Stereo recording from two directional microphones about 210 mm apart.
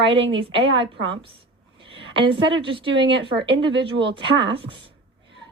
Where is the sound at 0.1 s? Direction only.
25° right (ahead or behind).